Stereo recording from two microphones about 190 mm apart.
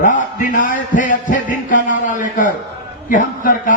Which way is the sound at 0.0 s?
45° left (ahead or behind).